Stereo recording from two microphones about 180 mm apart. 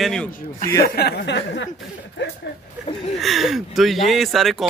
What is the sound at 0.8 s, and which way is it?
Speech, 60° left (ahead or behind).